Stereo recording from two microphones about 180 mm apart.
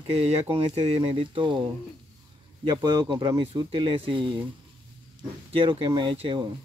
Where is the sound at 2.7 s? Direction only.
25° right (ahead or behind).